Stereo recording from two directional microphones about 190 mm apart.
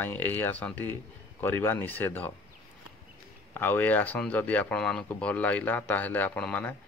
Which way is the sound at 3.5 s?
10° left (ahead or behind).